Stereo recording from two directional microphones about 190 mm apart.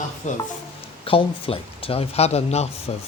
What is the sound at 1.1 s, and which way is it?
Speech, 30° left (ahead or behind).